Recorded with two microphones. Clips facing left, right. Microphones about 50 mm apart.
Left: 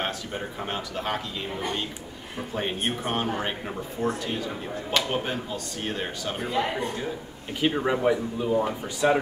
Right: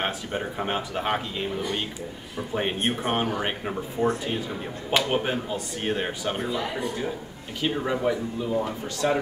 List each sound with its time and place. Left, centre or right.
0.0 s speech: centre
2.5 s speech: centre
7.6 s speech: centre